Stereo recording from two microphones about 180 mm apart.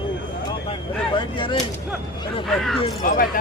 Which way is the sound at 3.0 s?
50° left (ahead or behind).